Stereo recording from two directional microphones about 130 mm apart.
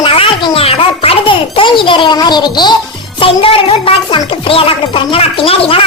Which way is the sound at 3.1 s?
45° left (ahead or behind).